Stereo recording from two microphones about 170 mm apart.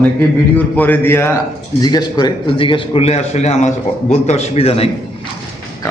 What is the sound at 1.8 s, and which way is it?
A man's voice, 25° left (ahead or behind).